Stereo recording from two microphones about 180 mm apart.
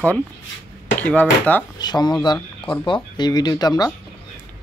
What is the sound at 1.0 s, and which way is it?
Speech, 10° left (ahead or behind).